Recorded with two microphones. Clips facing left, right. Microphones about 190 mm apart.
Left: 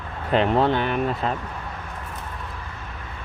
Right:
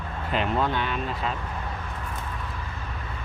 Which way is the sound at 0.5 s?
60° left (ahead or behind).